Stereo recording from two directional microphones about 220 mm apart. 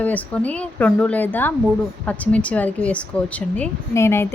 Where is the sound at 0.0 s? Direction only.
5° left (ahead or behind).